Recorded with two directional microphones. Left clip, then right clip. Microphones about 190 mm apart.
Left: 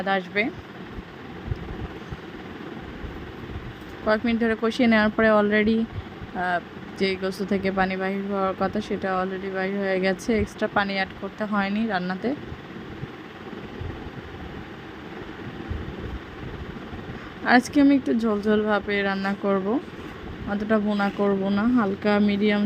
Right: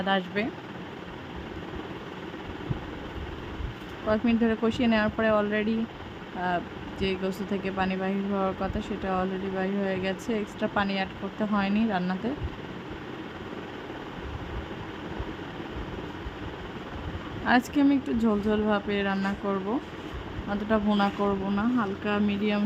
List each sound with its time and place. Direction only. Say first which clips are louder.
0.0 s speech: left 3 dB; 15° left (ahead or behind)
4.0 s speech: left 3 dB; 25° left (ahead or behind)
7.0 s speech: left 5 dB; 20° left (ahead or behind)
17.7 s speech: left 5 dB; 15° left (ahead or behind)
20.7 s speech: left 2 dB; 10° left (ahead or behind)